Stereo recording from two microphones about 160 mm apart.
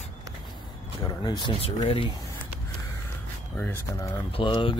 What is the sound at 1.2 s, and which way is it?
Speech, 30° left (ahead or behind).